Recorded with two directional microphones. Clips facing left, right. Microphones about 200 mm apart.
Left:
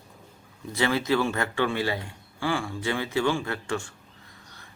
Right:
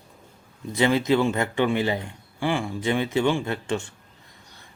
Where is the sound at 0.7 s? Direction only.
20° right (ahead or behind).